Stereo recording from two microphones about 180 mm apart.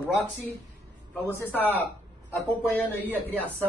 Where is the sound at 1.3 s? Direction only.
15° left (ahead or behind).